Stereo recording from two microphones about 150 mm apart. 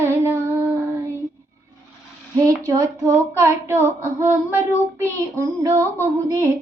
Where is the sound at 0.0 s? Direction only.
15° right (ahead or behind).